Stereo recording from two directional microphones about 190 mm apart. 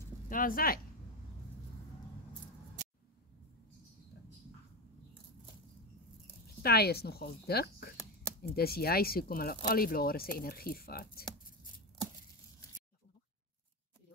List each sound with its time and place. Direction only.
0.3 s speech: 45° left (ahead or behind)
2.8 s a sound: 40° right (ahead or behind)
6.6 s speech: 55° left (ahead or behind)